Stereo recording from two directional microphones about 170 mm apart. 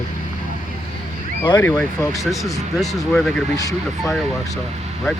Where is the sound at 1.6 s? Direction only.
15° left (ahead or behind).